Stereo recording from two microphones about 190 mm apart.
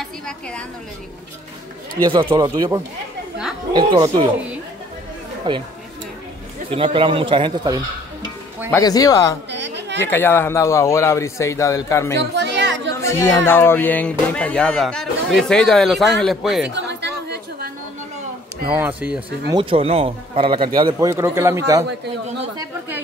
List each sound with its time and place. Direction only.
2.0 s speech: 25° right (ahead or behind)
5.5 s speech: 25° right (ahead or behind)
6.7 s speech: 30° right (ahead or behind)
8.6 s speech: 15° left (ahead or behind)
9.5 s chatter: 65° right (ahead or behind)
10.0 s speech: 10° left (ahead or behind)
12.4 s music: 65° right (ahead or behind)
13.0 s speech: 15° left (ahead or behind); by 16.7 s centre (ahead or behind)
16.7 s chatter: 65° right (ahead or behind)
18.7 s a man's voice: 10° right (ahead or behind)
19.5 s speech: 30° right (ahead or behind)
21.1 s a man's voice: 15° right (ahead or behind)